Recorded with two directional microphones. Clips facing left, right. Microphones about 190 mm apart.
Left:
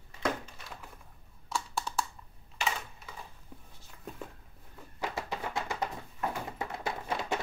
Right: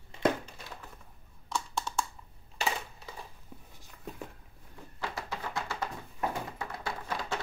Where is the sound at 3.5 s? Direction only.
5° right (ahead or behind).